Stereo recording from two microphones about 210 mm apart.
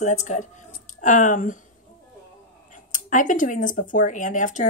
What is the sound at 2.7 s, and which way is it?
A woman's voice, 35° left (ahead or behind).